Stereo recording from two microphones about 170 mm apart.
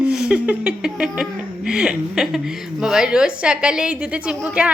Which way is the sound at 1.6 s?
5° right (ahead or behind).